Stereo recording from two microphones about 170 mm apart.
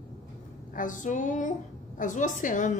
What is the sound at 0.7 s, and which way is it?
A woman's voice, 50° left (ahead or behind).